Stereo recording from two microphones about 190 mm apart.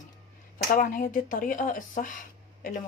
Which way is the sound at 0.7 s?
45° left (ahead or behind).